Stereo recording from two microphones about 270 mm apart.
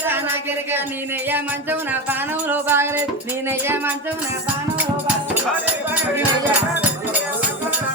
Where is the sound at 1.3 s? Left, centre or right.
Centre.